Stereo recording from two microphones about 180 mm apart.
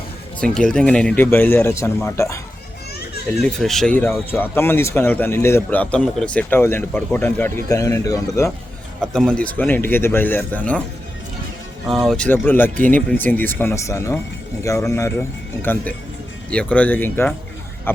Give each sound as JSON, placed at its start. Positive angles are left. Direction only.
{"t": 0.3, "sound": "speech", "side_deg": 5}
{"t": 3.4, "sound": "speech", "side_deg": 0}
{"t": 9.1, "sound": "speech", "side_deg": 5}
{"t": 11.9, "sound": "speech", "side_deg": 0}